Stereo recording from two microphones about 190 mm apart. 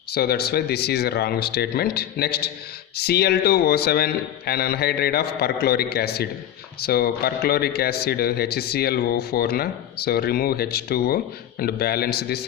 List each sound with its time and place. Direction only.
0.1 s a man's voice: 55° left (ahead or behind)